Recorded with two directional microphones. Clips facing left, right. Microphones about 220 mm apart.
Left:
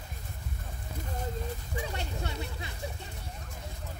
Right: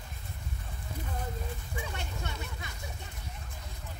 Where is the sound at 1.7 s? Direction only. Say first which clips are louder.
Left 4 dB; 35° left (ahead or behind).